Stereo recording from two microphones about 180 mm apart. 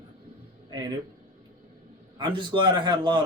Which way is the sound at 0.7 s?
25° right (ahead or behind).